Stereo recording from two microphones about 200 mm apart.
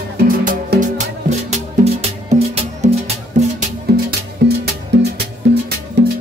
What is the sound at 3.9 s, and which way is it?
Music, 55° right (ahead or behind).